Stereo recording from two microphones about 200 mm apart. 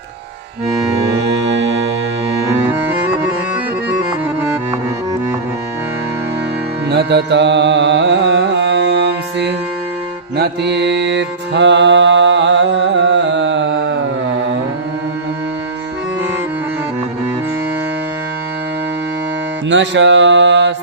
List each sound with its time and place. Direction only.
6.8 s carnatic music: 55° right (ahead or behind)
10.3 s mantra: 55° right (ahead or behind)
19.6 s music: 65° right (ahead or behind)